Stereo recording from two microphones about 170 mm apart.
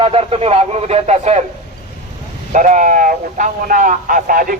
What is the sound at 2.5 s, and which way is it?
Speech, 45° right (ahead or behind).